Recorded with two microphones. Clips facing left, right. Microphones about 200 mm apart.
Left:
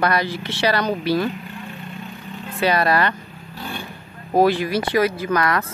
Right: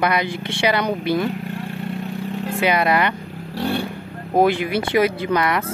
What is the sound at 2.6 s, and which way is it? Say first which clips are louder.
Speech: even; 15° right (ahead or behind).